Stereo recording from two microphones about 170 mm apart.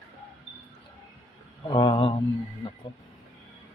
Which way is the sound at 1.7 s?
30° left (ahead or behind).